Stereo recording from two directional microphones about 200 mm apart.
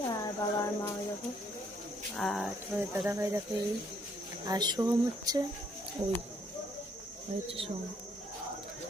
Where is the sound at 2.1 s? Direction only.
Centre (ahead or behind).